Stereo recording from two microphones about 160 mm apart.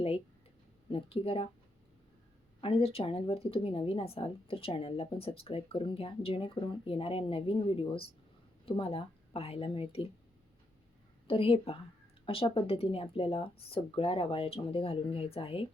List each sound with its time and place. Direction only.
0.9 s a woman's voice: 35° left (ahead or behind)
2.6 s a woman's voice: 35° left (ahead or behind)
11.3 s a woman's voice: 35° left (ahead or behind)